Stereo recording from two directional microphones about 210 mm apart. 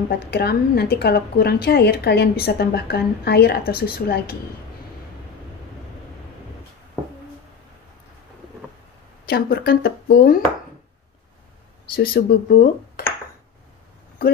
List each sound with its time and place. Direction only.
0.1 s a woman's voice: 50° left (ahead or behind)
9.2 s a woman's voice: 45° left (ahead or behind)
11.9 s a woman's voice: 45° left (ahead or behind)